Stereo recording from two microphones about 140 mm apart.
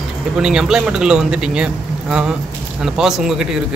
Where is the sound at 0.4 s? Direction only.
5° right (ahead or behind).